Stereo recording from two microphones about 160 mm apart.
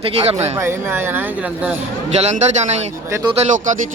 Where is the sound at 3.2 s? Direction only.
35° right (ahead or behind).